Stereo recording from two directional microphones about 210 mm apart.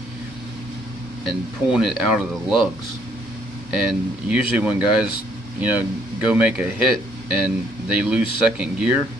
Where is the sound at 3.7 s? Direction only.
5° right (ahead or behind).